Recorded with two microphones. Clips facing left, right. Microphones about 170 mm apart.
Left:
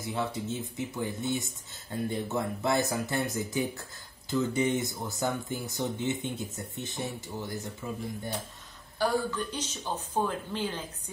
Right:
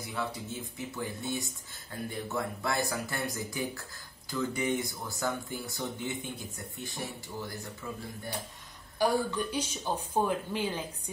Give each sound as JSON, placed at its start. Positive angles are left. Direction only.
{"t": 0.0, "sound": "speech", "side_deg": 25}
{"t": 8.9, "sound": "speech", "side_deg": -10}